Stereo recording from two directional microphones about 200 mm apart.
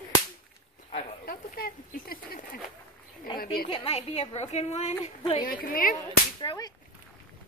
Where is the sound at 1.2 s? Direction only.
45° left (ahead or behind).